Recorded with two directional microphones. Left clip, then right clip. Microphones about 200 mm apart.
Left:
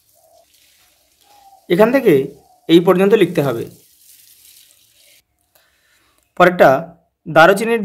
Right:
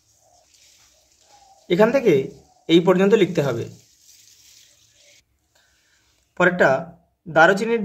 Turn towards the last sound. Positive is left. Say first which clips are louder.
# left 5 dB
turn(degrees=30)  # may be behind; listen again after turning